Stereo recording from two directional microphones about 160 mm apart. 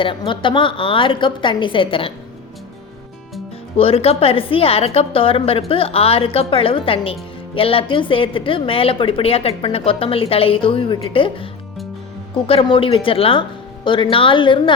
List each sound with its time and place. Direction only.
0.0 s a woman's voice: 30° left (ahead or behind)
3.8 s a woman's voice: 35° left (ahead or behind)
12.5 s a woman's voice: 35° left (ahead or behind)